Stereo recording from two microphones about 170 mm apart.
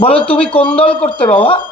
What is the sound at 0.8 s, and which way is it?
Speech, 35° left (ahead or behind).